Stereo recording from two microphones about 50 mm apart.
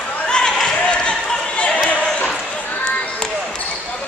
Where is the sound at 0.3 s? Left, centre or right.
Centre.